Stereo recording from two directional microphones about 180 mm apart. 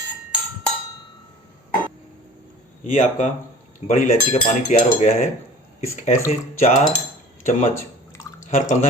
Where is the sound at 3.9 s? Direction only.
40° left (ahead or behind).